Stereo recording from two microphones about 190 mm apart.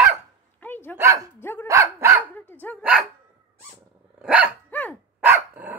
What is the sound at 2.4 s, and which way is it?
Dog, 10° left (ahead or behind).